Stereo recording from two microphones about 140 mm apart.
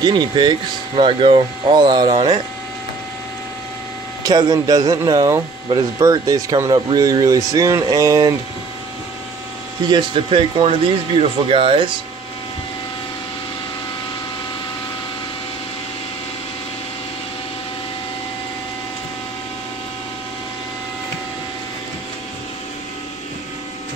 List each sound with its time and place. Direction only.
0.0 s speech: 30° right (ahead or behind)
4.2 s speech: 25° right (ahead or behind)
9.8 s speech: 35° right (ahead or behind)